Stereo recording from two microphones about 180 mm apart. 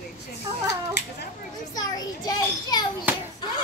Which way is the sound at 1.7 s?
20° left (ahead or behind).